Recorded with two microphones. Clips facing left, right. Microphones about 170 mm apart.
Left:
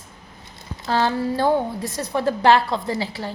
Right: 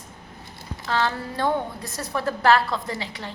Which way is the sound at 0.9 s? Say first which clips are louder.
Left 5 dB; 30° left (ahead or behind).